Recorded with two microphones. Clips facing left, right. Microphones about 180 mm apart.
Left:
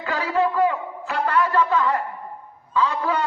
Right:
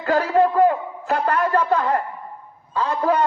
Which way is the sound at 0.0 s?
45° right (ahead or behind).